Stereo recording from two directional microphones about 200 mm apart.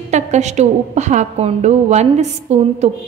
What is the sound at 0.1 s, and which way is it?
A woman's voice, 35° right (ahead or behind).